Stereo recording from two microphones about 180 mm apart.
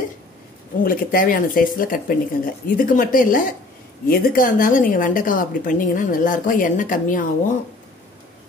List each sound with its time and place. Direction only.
0.8 s a woman's voice: 50° left (ahead or behind)